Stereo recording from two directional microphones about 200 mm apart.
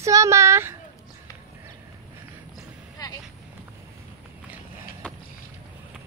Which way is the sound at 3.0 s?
20° left (ahead or behind).